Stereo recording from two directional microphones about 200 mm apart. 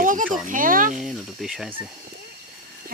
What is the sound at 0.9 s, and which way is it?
Speech, centre (ahead or behind).